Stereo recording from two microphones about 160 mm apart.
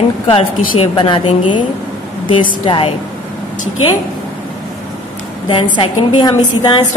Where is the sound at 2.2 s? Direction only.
30° left (ahead or behind).